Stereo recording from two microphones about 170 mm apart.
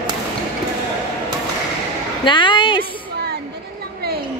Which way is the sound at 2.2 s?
30° left (ahead or behind).